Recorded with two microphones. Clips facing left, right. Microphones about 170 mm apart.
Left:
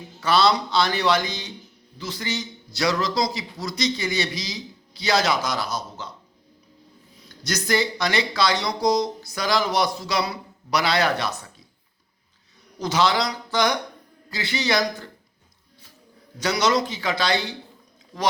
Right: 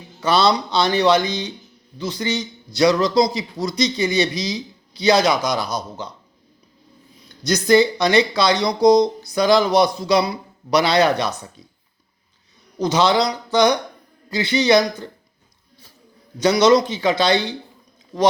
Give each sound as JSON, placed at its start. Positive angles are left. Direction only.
{"t": 0.2, "sound": "a man's voice", "side_deg": -20}
{"t": 7.4, "sound": "a man's voice", "side_deg": -20}
{"t": 12.8, "sound": "a man's voice", "side_deg": -20}
{"t": 16.4, "sound": "a man's voice", "side_deg": -20}